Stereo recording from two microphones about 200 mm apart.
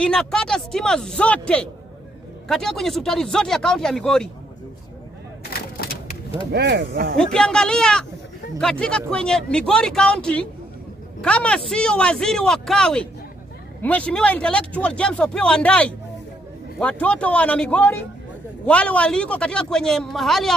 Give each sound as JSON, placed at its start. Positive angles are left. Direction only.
{"t": 0.0, "sound": "speech", "side_deg": 5}
{"t": 5.5, "sound": "a sound", "side_deg": 50}
{"t": 6.5, "sound": "speech", "side_deg": -55}
{"t": 7.2, "sound": "speech", "side_deg": 5}